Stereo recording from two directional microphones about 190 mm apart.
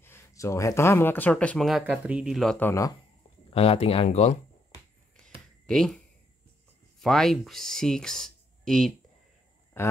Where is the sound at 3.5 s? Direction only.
30° left (ahead or behind).